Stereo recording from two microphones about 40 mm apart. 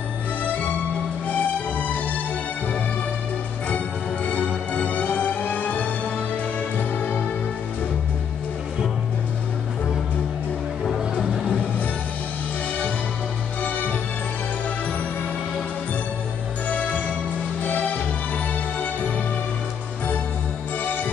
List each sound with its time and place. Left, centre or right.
1.2 s music: left
3.6 s music: left
16.6 s music: left